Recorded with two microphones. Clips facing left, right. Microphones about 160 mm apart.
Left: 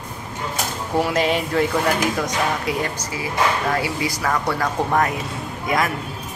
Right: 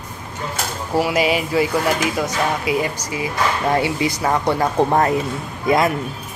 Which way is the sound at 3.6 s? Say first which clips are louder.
Right 4 dB; 25° right (ahead or behind).